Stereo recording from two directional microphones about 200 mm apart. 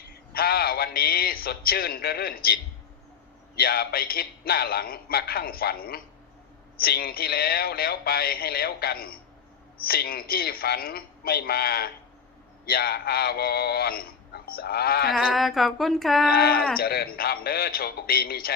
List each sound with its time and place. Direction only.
0.1 s a man's voice: 50° left (ahead or behind)
15.1 s a sound: centre (ahead or behind)
16.3 s a man's voice: 50° left (ahead or behind)